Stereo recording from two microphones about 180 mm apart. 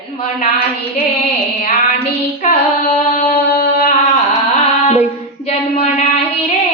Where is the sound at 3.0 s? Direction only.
35° left (ahead or behind).